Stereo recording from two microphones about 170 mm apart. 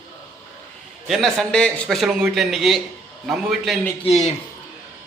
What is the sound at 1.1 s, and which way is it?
A man's voice, centre (ahead or behind).